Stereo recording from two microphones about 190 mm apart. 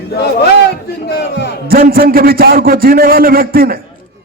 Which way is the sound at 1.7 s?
50° right (ahead or behind).